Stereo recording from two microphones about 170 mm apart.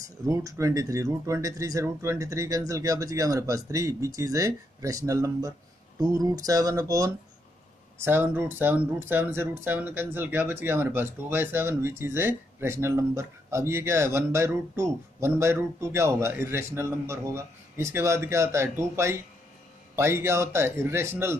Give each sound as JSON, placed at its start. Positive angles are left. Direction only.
{"t": 0.0, "sound": "speech", "side_deg": -20}